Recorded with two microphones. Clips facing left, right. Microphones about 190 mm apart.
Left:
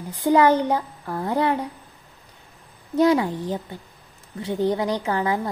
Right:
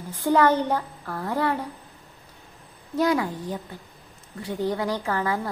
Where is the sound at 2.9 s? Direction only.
25° left (ahead or behind).